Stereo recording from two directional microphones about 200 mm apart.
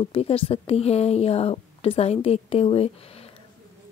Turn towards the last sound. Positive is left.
turn(degrees=30)  # may be behind; listen again after turning